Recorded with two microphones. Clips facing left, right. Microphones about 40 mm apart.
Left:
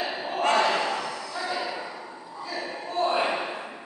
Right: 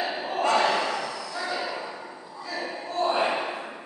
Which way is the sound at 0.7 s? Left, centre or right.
Centre.